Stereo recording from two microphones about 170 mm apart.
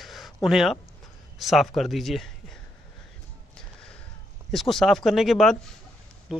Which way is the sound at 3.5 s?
5° left (ahead or behind).